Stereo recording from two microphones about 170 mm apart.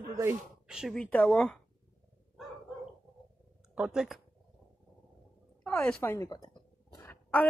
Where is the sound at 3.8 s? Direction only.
5° right (ahead or behind).